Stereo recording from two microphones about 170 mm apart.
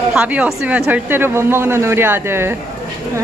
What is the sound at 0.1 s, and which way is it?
A man's voice, 5° right (ahead or behind).